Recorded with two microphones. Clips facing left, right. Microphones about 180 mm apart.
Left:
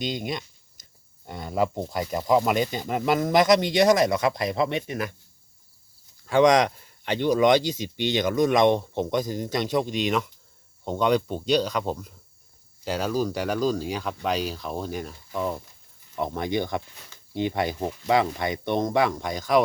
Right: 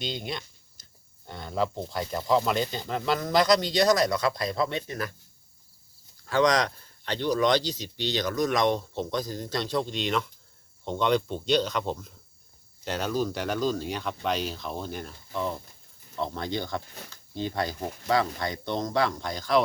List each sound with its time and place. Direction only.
1.3 s speech: 10° left (ahead or behind)
6.3 s speech: 20° left (ahead or behind)